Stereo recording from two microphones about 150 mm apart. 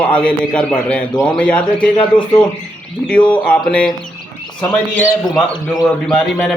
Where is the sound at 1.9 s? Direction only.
30° left (ahead or behind).